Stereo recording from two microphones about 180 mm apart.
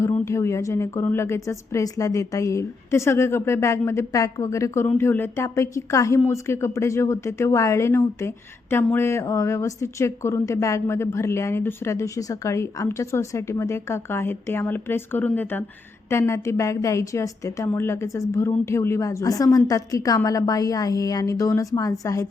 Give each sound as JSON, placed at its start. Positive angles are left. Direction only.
{"t": 0.0, "sound": "a woman's voice", "side_deg": 15}